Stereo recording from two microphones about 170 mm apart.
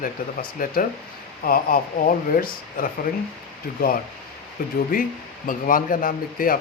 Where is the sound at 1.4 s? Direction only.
55° left (ahead or behind).